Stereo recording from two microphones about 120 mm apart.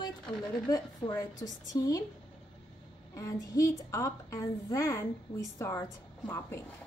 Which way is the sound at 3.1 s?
25° left (ahead or behind).